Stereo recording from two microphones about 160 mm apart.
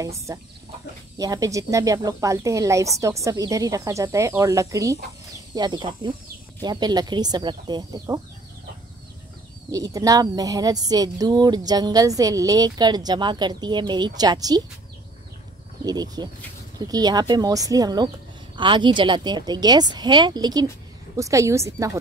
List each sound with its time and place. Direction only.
0.0 s speech: 20° right (ahead or behind)
9.7 s speech: 20° right (ahead or behind)
15.8 s speech: 25° right (ahead or behind)